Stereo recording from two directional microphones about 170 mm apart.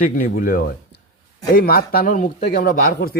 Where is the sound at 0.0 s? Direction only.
55° left (ahead or behind).